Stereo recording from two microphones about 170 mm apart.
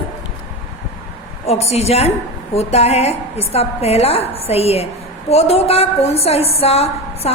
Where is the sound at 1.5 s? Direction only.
40° left (ahead or behind).